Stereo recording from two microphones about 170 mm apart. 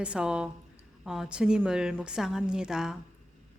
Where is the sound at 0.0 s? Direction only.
5° right (ahead or behind).